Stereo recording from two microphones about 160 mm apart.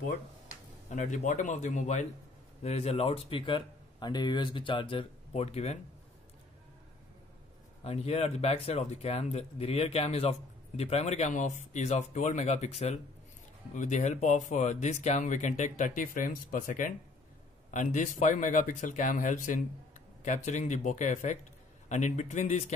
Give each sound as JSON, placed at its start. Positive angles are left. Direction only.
{"t": 0.5, "sound": "speech", "side_deg": 50}
{"t": 7.8, "sound": "a man's voice", "side_deg": 40}